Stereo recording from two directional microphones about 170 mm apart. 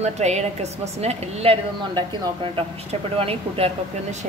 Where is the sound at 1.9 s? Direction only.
25° right (ahead or behind).